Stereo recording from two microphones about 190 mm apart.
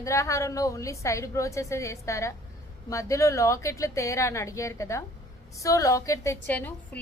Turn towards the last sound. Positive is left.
turn(degrees=10)  # may be behind; listen again after turning